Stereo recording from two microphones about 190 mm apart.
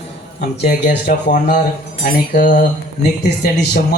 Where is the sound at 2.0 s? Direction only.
40° left (ahead or behind).